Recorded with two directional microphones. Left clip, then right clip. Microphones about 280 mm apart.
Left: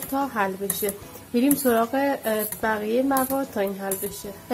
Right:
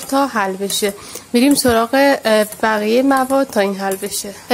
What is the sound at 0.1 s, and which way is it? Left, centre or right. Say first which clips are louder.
A woman's voice: right 9 dB; right.